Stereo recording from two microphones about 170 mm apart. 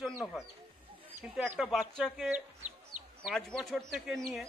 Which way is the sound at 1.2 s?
5° right (ahead or behind).